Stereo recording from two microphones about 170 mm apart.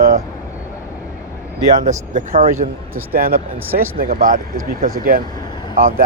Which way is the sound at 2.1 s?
40° right (ahead or behind).